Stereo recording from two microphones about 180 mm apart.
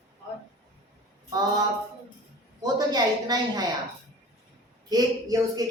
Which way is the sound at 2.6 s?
20° right (ahead or behind).